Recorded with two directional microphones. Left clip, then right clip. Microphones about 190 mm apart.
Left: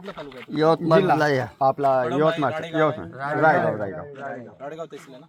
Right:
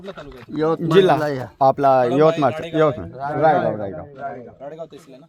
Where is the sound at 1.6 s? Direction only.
60° right (ahead or behind).